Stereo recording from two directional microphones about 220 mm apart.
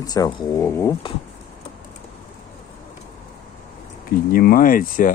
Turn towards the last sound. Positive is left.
turn(degrees=40)  # may be behind; listen again after turning